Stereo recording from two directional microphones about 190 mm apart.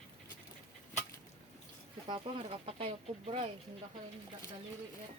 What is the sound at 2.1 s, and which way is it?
Speech, 25° right (ahead or behind).